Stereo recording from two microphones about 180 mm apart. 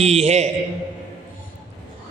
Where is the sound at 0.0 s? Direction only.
35° right (ahead or behind).